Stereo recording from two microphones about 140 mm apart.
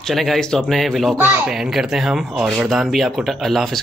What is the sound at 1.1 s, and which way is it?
Speech, 15° right (ahead or behind).